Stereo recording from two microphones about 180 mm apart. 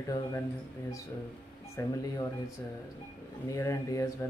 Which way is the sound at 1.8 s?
15° left (ahead or behind).